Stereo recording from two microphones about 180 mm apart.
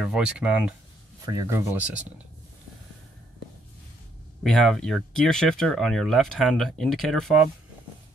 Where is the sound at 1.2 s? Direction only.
20° right (ahead or behind).